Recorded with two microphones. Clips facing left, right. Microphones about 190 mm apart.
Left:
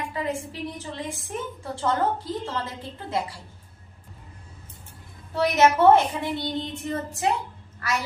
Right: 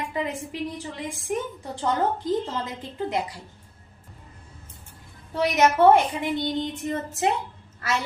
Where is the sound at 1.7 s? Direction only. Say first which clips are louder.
Even; 15° right (ahead or behind).